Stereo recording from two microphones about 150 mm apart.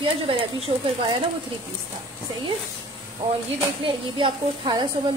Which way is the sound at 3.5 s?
30° right (ahead or behind).